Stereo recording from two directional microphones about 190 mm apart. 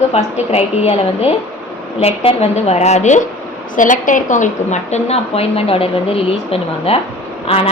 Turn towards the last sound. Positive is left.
turn(degrees=30)  # may be behind; listen again after turning